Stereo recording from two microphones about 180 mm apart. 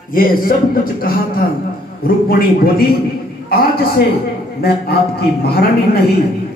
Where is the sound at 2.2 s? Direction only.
55° left (ahead or behind).